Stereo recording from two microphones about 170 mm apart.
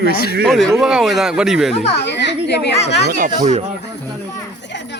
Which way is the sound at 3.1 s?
45° right (ahead or behind).